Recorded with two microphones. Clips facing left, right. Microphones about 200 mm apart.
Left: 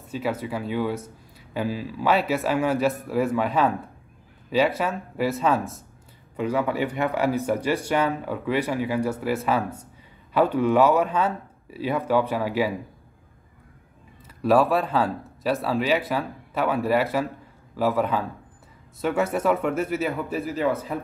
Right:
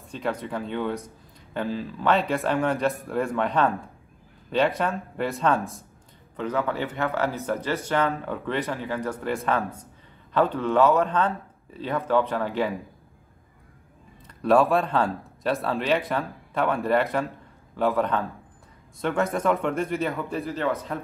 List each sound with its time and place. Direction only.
0.1 s speech: 5° left (ahead or behind)
14.2 s speech: 5° left (ahead or behind)